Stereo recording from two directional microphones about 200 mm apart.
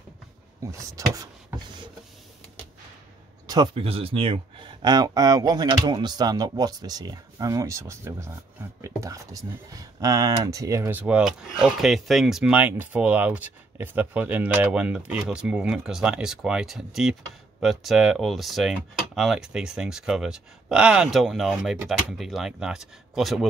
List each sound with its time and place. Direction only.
0.7 s speech: 15° right (ahead or behind)
3.4 s speech: 20° right (ahead or behind); by 23.5 s centre (ahead or behind)